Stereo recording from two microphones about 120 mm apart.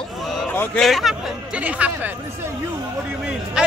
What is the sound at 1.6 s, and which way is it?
Speech, 10° right (ahead or behind).